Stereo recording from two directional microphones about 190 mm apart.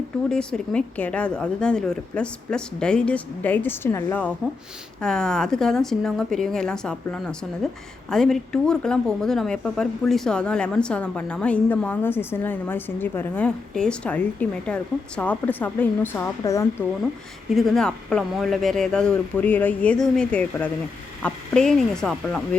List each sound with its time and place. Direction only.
0.3 s a woman's voice: 5° left (ahead or behind)
17.5 s a woman's voice: centre (ahead or behind)